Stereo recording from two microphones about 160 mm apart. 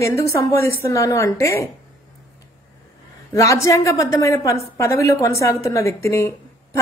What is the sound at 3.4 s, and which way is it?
A woman's voice, 20° left (ahead or behind).